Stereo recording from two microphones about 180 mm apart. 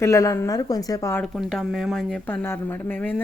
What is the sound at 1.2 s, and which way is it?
Speech, centre (ahead or behind).